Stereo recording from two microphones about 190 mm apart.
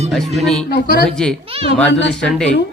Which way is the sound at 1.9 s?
70° left (ahead or behind).